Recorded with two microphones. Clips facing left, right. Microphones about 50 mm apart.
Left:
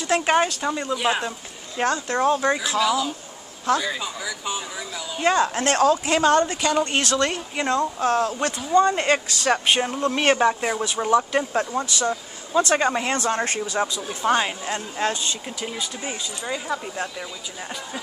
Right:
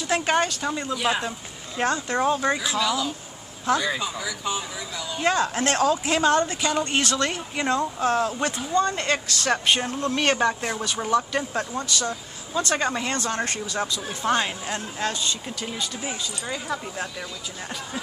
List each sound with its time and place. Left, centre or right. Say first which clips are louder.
0.0 s speech: left 3 dB; centre
1.9 s speech: left 2 dB; centre
2.8 s speech: left 3 dB; centre
8.7 s speech: left 6 dB; left
9.4 s speech: left 2 dB; centre
15.4 s speech: left 1 dB; centre